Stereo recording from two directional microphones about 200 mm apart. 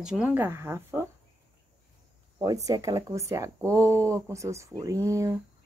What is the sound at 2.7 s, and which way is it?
A woman's voice, 15° right (ahead or behind).